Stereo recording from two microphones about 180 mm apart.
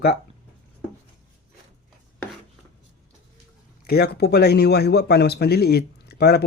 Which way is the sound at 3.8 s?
60° left (ahead or behind).